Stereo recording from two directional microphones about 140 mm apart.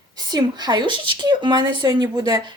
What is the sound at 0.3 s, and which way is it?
Speech, 30° right (ahead or behind).